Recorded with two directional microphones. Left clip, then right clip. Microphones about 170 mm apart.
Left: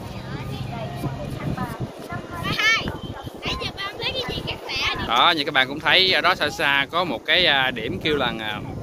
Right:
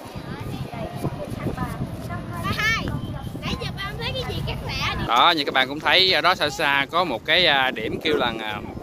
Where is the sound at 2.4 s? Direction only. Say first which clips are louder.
Left 3 dB; 45° right (ahead or behind).